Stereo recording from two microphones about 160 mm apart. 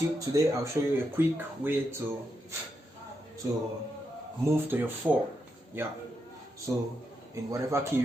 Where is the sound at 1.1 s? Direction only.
15° right (ahead or behind).